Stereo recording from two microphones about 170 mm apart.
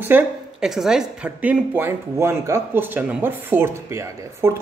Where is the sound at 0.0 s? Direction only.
5° right (ahead or behind).